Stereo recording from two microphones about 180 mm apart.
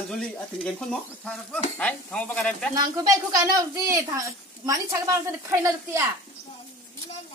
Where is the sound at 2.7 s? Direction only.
20° right (ahead or behind).